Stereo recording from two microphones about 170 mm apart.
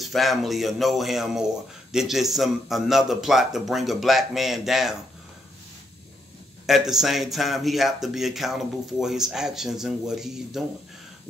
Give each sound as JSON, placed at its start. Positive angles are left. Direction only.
{"t": 0.0, "sound": "speech", "side_deg": 0}
{"t": 6.6, "sound": "speech", "side_deg": 0}